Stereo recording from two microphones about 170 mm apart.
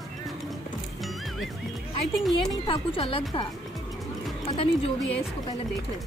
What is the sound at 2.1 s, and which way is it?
Speech, centre (ahead or behind).